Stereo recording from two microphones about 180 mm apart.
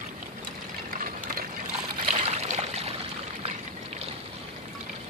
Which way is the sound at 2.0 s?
35° right (ahead or behind).